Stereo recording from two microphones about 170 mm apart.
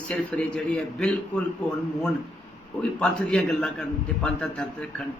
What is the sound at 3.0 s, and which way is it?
A man's voice, 5° left (ahead or behind).